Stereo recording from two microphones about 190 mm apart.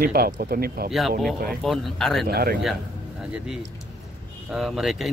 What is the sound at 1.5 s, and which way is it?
Speech, centre (ahead or behind).